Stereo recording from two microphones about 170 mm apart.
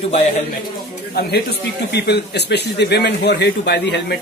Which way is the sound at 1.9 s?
75° left (ahead or behind).